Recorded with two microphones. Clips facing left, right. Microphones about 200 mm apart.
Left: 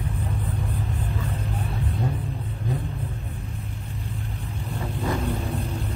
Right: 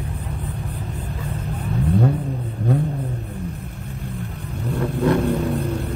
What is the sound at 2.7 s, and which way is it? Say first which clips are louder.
Vehicle: right 10 dB; 65° right (ahead or behind).